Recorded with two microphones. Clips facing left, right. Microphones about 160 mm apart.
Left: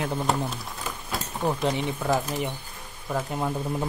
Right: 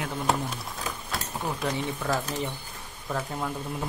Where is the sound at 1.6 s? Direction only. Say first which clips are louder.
Left 3 dB; 20° left (ahead or behind).